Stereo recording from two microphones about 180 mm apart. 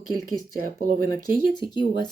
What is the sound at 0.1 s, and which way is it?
Speech, 50° right (ahead or behind).